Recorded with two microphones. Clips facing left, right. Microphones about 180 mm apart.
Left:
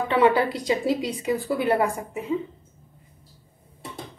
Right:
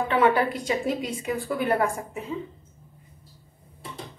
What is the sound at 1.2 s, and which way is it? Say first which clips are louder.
A woman's voice: left 2 dB; 15° left (ahead or behind).